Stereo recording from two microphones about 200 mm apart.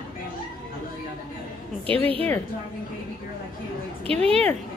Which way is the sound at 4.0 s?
30° right (ahead or behind).